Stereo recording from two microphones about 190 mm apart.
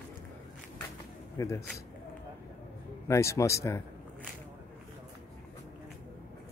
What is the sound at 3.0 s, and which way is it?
Speech, 15° left (ahead or behind).